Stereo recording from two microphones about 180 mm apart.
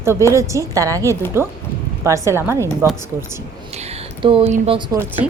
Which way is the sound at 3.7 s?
35° right (ahead or behind).